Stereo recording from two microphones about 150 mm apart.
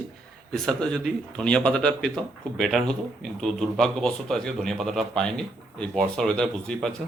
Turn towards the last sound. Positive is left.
turn(degrees=5)  # may be behind; listen again after turning